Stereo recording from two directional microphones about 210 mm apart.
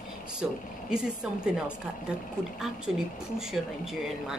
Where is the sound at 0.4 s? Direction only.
5° right (ahead or behind).